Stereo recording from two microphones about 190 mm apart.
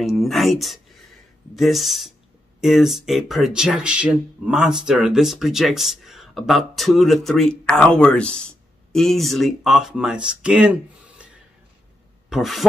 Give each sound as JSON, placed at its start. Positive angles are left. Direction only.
{"t": 0.0, "sound": "speech", "side_deg": 0}
{"t": 12.3, "sound": "speech", "side_deg": 0}